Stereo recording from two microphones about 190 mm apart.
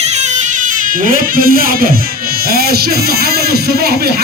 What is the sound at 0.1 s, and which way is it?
A man's voice, 40° right (ahead or behind).